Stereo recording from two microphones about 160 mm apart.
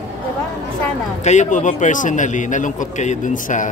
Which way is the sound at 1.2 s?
50° left (ahead or behind).